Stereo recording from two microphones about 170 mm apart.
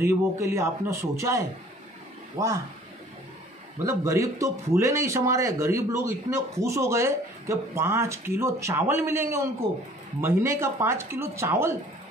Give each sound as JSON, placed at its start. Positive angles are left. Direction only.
{"t": 0.0, "sound": "speech", "side_deg": -15}
{"t": 3.8, "sound": "speech", "side_deg": -15}